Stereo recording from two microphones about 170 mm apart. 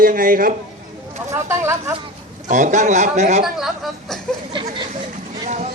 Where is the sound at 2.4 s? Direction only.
45° right (ahead or behind).